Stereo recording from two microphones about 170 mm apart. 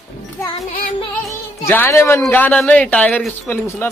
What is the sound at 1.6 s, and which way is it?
Speech, 15° left (ahead or behind).